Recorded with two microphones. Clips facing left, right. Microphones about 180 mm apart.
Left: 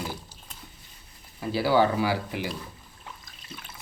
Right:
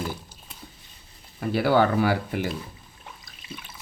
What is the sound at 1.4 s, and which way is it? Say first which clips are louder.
Speech: right 2 dB; 55° right (ahead or behind).